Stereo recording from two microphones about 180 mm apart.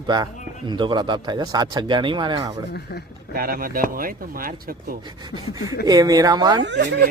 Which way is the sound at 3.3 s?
55° right (ahead or behind).